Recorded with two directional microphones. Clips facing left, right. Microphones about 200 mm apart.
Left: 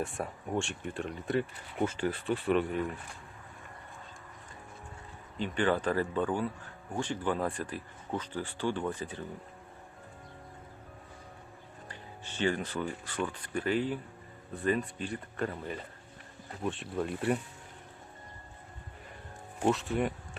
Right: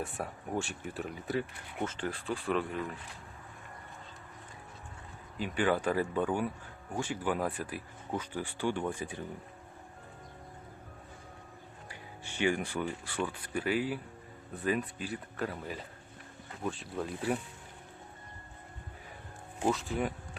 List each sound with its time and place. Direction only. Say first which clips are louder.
0.0 s speech: left 2 dB; centre (ahead or behind)
1.8 s speech: left 5 dB; 10° left (ahead or behind)
5.4 s speech: left 1 dB; 10° right (ahead or behind)
11.9 s speech: left 1 dB; 10° right (ahead or behind)
19.6 s speech: left 2 dB; centre (ahead or behind)